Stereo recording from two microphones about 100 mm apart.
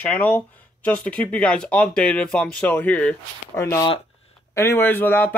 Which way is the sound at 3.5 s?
30° left (ahead or behind).